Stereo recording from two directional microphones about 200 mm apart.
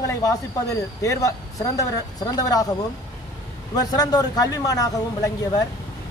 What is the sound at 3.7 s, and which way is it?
A man's voice, 20° left (ahead or behind).